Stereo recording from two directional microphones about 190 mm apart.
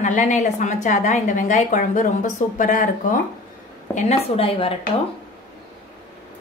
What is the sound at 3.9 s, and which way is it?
Speech, 30° left (ahead or behind).